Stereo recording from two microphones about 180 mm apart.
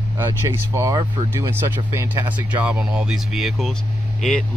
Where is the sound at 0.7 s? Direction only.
20° right (ahead or behind).